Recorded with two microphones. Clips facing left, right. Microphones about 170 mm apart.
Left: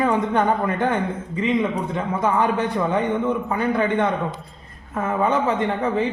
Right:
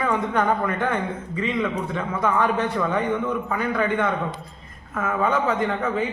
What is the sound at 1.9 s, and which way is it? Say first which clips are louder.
A man's voice: left 2 dB; 20° left (ahead or behind).